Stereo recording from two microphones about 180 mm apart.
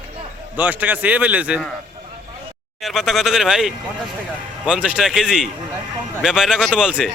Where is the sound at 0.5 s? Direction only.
10° right (ahead or behind).